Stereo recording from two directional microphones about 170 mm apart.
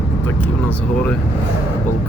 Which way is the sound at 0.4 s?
10° left (ahead or behind).